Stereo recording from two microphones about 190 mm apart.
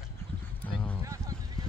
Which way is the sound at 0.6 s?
10° left (ahead or behind).